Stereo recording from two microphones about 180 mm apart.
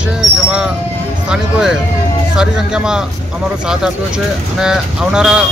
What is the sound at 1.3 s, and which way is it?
Speech, 5° right (ahead or behind).